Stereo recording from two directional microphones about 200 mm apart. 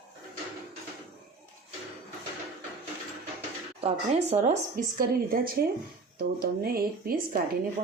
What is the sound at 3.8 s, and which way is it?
A woman's voice, 30° right (ahead or behind).